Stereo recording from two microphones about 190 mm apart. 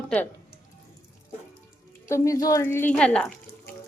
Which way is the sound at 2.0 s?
15° left (ahead or behind).